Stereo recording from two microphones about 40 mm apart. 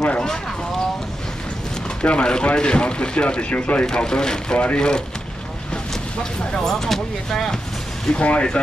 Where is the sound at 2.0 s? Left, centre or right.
Left.